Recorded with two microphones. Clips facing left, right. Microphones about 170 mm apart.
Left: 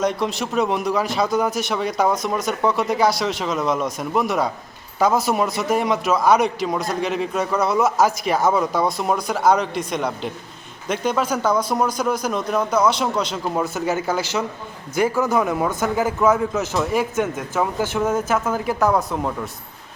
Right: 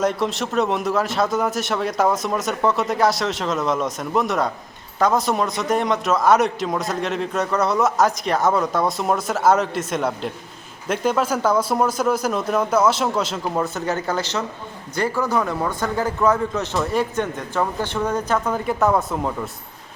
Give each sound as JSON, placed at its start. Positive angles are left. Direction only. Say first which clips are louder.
{"t": 0.0, "sound": "a man's voice", "louder": "even", "side_deg": 0}